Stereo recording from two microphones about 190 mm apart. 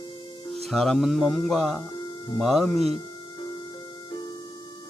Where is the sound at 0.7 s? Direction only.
Centre (ahead or behind).